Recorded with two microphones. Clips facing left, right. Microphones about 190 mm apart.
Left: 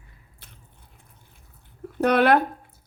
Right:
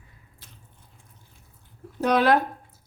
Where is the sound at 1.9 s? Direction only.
60° left (ahead or behind).